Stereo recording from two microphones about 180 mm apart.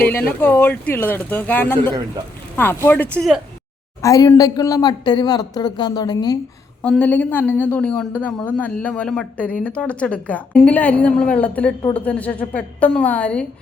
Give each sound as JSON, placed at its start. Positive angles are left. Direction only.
{"t": 0.0, "sound": "speech", "side_deg": 10}
{"t": 4.0, "sound": "speech", "side_deg": 20}
{"t": 6.8, "sound": "speech", "side_deg": 10}